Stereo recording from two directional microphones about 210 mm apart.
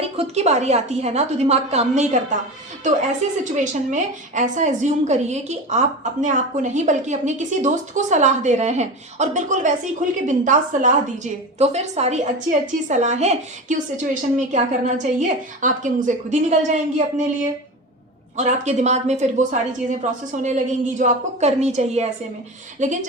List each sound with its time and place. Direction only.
0.2 s a woman's voice: 30° right (ahead or behind)
3.2 s a woman's voice: 35° right (ahead or behind)
18.3 s a woman's voice: 35° right (ahead or behind)